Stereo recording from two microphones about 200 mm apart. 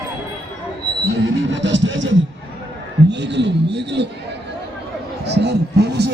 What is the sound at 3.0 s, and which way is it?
Speech, 60° right (ahead or behind).